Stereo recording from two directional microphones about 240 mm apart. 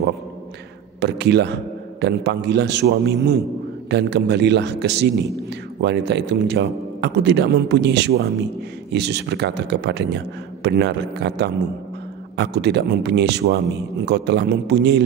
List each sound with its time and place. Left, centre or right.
1.0 s a man's voice: right